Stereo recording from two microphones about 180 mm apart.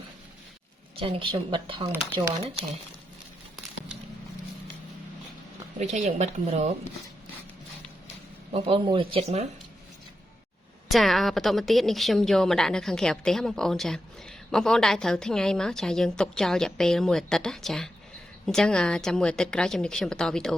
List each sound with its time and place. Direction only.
0.9 s speech: 25° right (ahead or behind)
5.8 s a woman's voice: 40° right (ahead or behind)
8.5 s speech: 30° right (ahead or behind)
10.8 s a woman's voice: centre (ahead or behind)